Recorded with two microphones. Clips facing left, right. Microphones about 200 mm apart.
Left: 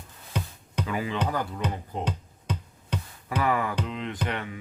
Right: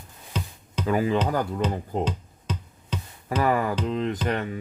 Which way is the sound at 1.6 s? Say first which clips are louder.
Right 5 dB; 15° left (ahead or behind).